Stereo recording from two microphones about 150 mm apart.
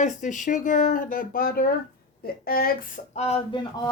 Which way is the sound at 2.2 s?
80° left.